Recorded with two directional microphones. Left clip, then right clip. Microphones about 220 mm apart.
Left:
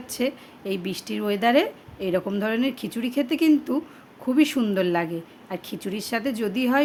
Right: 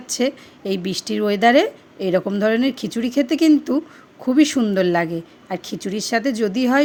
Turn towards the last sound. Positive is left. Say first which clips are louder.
# right 5 dB
turn(degrees=-20)  # may be behind; listen again after turning